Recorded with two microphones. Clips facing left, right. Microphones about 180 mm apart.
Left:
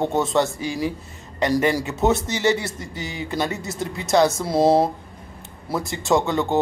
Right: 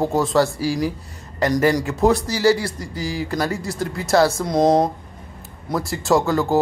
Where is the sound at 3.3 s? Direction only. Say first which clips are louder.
Right 2 dB; 20° left (ahead or behind).